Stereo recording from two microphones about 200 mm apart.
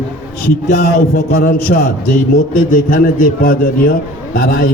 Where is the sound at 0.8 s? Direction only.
50° left (ahead or behind).